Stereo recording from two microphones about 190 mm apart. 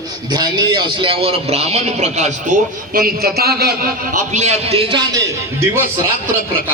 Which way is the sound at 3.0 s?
55° right (ahead or behind).